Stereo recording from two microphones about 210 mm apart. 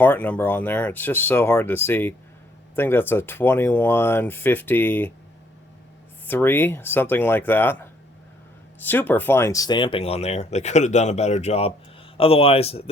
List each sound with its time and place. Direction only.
0.0 s speech: 10° left (ahead or behind)
6.2 s speech: 10° left (ahead or behind); by 12.9 s 30° left (ahead or behind)